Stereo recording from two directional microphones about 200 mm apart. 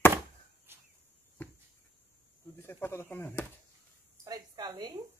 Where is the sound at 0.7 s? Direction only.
10° right (ahead or behind).